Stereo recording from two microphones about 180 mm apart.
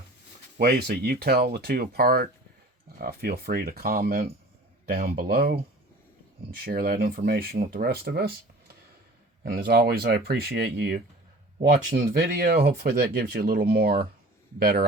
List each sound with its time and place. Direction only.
0.6 s speech: 60° right (ahead or behind)
11.7 s speech: 50° right (ahead or behind)